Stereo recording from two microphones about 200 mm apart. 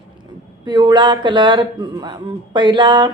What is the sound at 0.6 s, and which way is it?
Speech, 20° right (ahead or behind).